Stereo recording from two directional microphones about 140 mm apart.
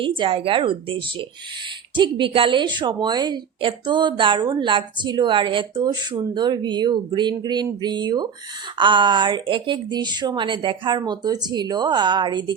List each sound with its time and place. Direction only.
0.0 s a woman's voice: 40° right (ahead or behind)